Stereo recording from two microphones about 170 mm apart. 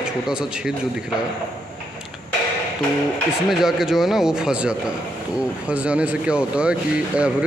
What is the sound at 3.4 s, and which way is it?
Speech, centre (ahead or behind).